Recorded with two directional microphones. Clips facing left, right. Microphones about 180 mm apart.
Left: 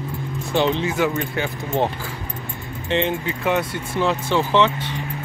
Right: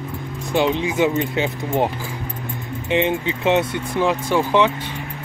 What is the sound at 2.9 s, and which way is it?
Speech, 15° right (ahead or behind).